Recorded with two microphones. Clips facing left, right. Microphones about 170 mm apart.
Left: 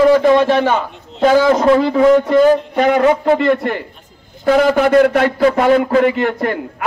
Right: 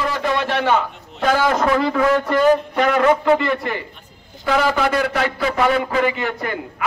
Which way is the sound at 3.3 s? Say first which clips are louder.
Left 6 dB; 60° left (ahead or behind).